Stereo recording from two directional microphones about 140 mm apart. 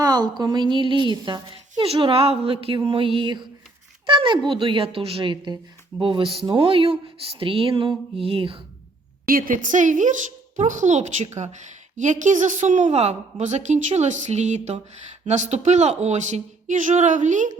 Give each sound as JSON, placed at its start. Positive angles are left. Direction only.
{"t": 0.0, "sound": "a woman's voice", "side_deg": -30}
{"t": 9.2, "sound": "a woman's voice", "side_deg": -85}